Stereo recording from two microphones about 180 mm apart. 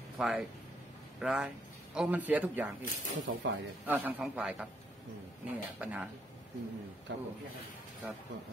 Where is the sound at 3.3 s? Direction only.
90° right.